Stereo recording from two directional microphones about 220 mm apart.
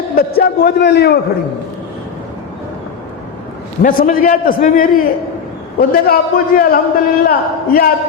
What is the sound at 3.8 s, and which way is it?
A man's voice, 40° left (ahead or behind).